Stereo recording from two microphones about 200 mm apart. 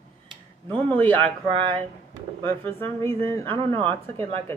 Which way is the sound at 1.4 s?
25° right (ahead or behind).